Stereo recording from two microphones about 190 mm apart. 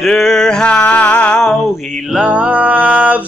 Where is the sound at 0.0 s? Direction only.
Centre (ahead or behind).